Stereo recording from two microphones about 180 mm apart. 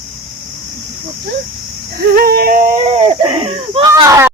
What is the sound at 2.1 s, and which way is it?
Yodeling, 60° right (ahead or behind).